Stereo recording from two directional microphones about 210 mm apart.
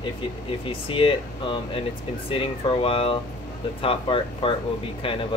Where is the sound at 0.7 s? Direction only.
25° left (ahead or behind).